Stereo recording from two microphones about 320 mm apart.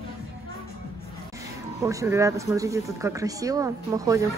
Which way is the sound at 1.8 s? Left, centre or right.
Centre.